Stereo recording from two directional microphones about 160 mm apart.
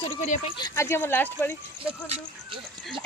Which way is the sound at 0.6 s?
20° left (ahead or behind).